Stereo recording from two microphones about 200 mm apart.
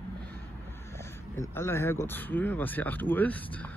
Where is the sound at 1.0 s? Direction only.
15° left (ahead or behind).